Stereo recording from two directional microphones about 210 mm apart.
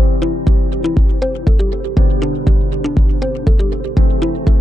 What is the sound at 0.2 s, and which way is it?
Music, centre (ahead or behind).